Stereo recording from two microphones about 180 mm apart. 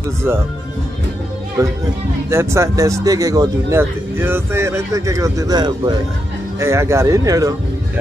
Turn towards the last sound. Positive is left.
turn(degrees=-20)  # may be behind; listen again after turning